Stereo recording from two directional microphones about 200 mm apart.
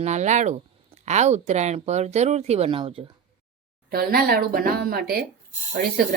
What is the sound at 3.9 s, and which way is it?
Speech, 50° right (ahead or behind).